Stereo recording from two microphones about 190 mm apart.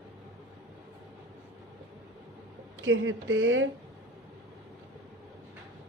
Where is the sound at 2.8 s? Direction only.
90° right.